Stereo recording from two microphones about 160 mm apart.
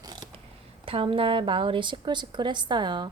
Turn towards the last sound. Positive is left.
turn(degrees=-30)  # may be behind; listen again after turning